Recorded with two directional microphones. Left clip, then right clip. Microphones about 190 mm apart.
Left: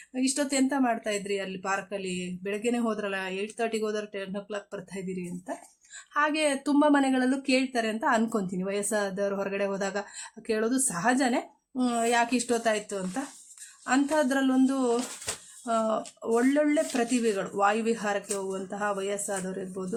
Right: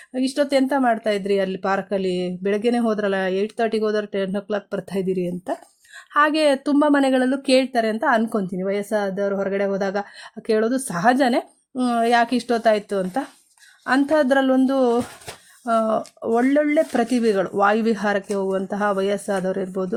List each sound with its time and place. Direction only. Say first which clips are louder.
0.1 s speech: right 9 dB; 35° right (ahead or behind)
6.7 s speech: right 6 dB; 25° right (ahead or behind)